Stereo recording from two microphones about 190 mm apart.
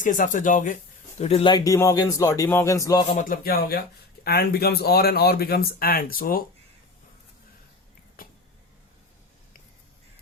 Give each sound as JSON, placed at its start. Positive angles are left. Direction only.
{"t": 0.0, "sound": "speech", "side_deg": 45}
{"t": 1.2, "sound": "speech", "side_deg": 30}
{"t": 3.1, "sound": "speech", "side_deg": 40}
{"t": 3.4, "sound": "speech", "side_deg": 55}